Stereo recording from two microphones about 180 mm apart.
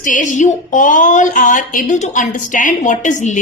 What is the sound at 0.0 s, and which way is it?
A woman's voice, 45° left (ahead or behind).